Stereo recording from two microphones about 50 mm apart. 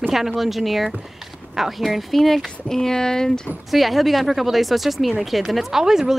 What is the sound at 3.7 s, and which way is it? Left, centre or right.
Speech, centre.